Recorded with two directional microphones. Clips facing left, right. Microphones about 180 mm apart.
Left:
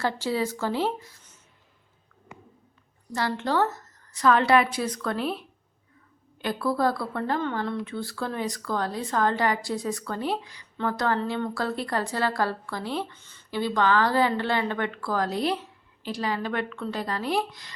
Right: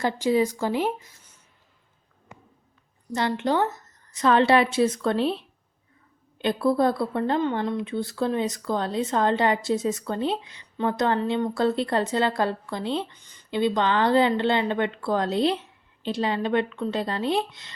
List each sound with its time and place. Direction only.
0.0 s speech: 15° right (ahead or behind)
3.1 s speech: 20° right (ahead or behind)